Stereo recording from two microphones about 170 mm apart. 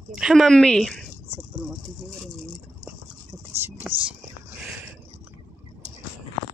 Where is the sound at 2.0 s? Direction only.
Centre (ahead or behind).